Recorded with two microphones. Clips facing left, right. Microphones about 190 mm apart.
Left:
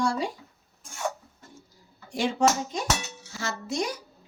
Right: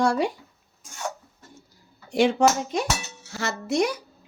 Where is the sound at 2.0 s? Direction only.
65° right (ahead or behind).